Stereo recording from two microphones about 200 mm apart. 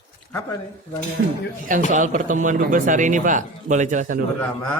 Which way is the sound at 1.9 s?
40° right (ahead or behind).